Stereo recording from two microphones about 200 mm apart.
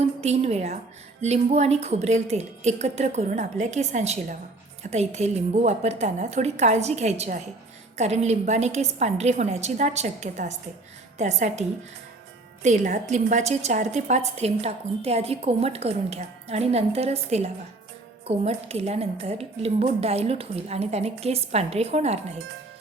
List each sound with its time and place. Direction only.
0.2 s a woman's voice: 30° right (ahead or behind)
12.6 s a woman's voice: 35° right (ahead or behind)